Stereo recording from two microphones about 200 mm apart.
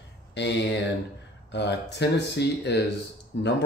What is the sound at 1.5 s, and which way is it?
Speech, 55° left (ahead or behind).